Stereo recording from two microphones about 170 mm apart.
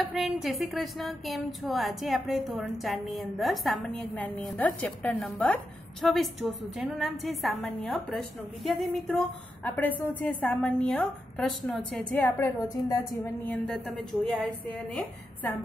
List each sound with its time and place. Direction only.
0.0 s a woman's voice: centre (ahead or behind); by 13.3 s 20° left (ahead or behind)
13.5 s speech: centre (ahead or behind)